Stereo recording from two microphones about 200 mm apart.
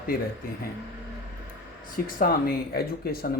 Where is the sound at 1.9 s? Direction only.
45° left (ahead or behind).